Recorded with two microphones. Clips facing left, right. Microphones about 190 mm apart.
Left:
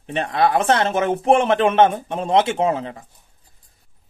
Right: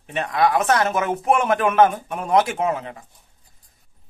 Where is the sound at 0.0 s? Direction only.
30° left (ahead or behind).